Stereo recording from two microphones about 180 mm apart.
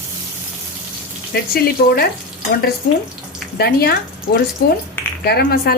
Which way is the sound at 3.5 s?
60° left (ahead or behind).